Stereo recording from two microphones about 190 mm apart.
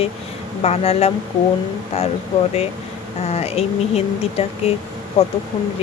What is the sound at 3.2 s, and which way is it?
Speech, 30° left (ahead or behind).